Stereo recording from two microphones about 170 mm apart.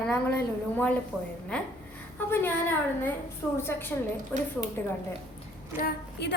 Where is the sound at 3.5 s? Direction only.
15° left (ahead or behind).